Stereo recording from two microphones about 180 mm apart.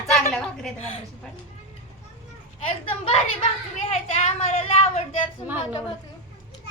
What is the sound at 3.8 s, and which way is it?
A woman's voice, 35° left (ahead or behind).